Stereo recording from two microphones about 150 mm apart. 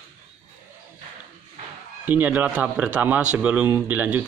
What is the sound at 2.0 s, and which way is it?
A man's voice, 10° right (ahead or behind).